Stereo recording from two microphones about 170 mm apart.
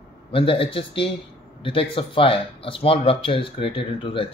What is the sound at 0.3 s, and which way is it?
Speech, 30° left (ahead or behind).